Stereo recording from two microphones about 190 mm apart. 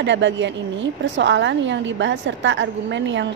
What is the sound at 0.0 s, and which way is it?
A woman's voice, 70° right (ahead or behind).